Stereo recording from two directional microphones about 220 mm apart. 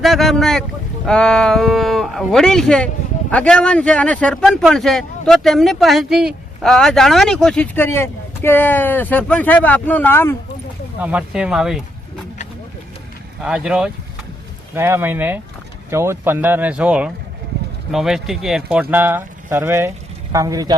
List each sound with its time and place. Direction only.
0.0 s speech: centre (ahead or behind)
11.0 s speech: 5° right (ahead or behind)
13.4 s speech: 5° right (ahead or behind)